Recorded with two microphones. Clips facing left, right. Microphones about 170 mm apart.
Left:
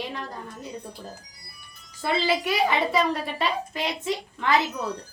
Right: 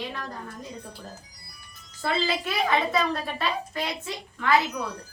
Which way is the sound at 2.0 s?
15° left (ahead or behind).